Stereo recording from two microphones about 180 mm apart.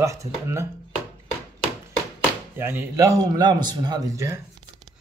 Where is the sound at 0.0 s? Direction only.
15° right (ahead or behind).